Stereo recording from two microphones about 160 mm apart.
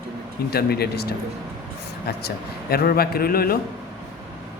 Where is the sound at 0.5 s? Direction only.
80° left.